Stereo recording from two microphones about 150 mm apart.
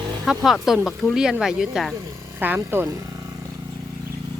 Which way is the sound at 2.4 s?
15° right (ahead or behind).